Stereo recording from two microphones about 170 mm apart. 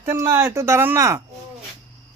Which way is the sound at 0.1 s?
15° right (ahead or behind).